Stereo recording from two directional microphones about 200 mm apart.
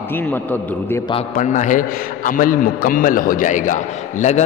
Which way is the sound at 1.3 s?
40° left (ahead or behind).